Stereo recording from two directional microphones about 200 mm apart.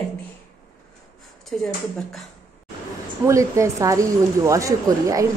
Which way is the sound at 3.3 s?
15° right (ahead or behind).